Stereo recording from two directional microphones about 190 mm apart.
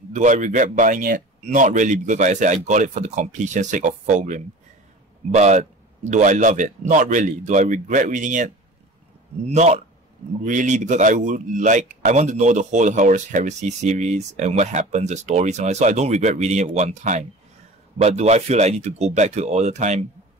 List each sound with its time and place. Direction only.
0.1 s speech: 40° right (ahead or behind)